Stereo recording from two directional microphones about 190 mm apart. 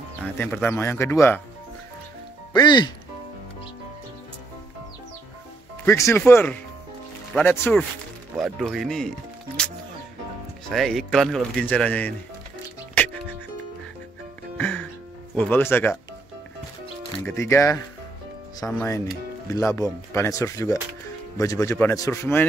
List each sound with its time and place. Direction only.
0.4 s speech: 10° left (ahead or behind)
2.5 s speech: 25° left (ahead or behind)
5.9 s speech: 15° left (ahead or behind)
10.7 s speech: centre (ahead or behind)
14.6 s music: 10° left (ahead or behind)
15.3 s speech: 10° left (ahead or behind)
17.3 s speech: 15° left (ahead or behind)